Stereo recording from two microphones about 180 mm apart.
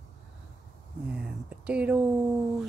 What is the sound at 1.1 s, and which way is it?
Speech, 5° right (ahead or behind).